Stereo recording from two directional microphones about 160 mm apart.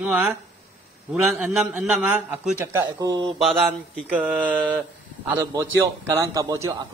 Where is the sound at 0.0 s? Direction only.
5° right (ahead or behind); by 3.2 s 20° right (ahead or behind).